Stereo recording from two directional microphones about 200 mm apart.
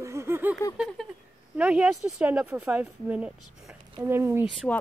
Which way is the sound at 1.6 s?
5° right (ahead or behind).